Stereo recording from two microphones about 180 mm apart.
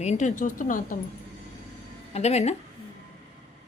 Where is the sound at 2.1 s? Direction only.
35° left (ahead or behind).